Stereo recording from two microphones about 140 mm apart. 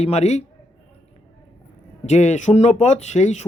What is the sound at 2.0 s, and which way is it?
Speech, 55° left (ahead or behind).